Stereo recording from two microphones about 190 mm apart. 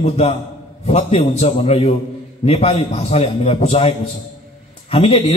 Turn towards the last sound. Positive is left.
turn(degrees=30)  # may be behind; listen again after turning